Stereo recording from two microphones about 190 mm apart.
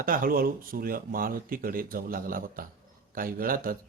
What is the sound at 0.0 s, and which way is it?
Speech, 50° right (ahead or behind).